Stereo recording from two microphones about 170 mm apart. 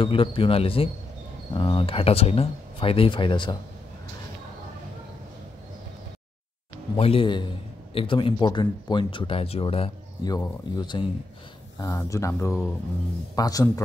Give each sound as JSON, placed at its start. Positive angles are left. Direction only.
{"t": 0.0, "sound": "speech", "side_deg": 30}
{"t": 7.0, "sound": "speech", "side_deg": 35}
{"t": 11.8, "sound": "speech", "side_deg": 15}